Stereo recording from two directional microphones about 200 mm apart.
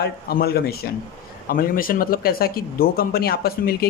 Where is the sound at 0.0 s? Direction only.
50° left (ahead or behind).